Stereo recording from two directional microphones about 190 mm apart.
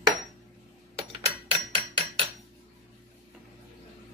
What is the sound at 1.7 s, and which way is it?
Hammer, 25° right (ahead or behind).